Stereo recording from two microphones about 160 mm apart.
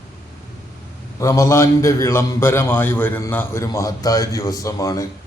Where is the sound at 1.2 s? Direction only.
20° left (ahead or behind).